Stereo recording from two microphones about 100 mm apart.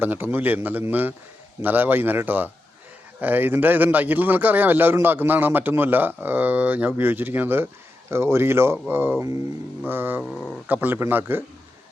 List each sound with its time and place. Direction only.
0.0 s a man's voice: 20° right (ahead or behind)